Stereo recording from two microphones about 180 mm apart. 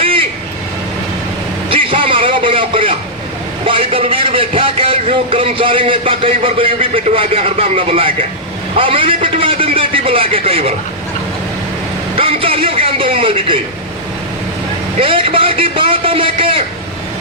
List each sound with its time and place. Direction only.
0.0 s vehicle: 30° right (ahead or behind)
1.7 s a sound: 30° right (ahead or behind)
3.7 s a man's voice: 30° right (ahead or behind)
12.1 s vehicle: 30° right (ahead or behind)
14.9 s a man's voice: 30° right (ahead or behind)